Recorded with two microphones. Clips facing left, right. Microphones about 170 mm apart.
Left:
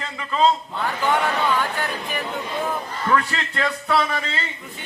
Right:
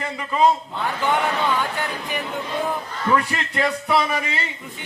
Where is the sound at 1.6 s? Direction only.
20° right (ahead or behind).